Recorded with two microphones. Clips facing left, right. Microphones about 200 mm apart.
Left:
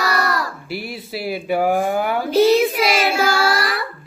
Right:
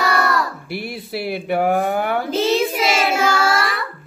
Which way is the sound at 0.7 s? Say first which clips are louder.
Right 1 dB; centre (ahead or behind).